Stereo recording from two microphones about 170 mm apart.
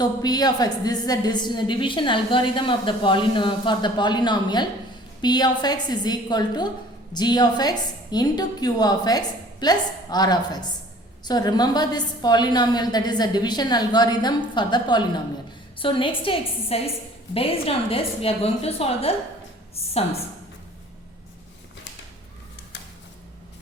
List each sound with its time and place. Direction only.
0.0 s a woman's voice: 25° left (ahead or behind)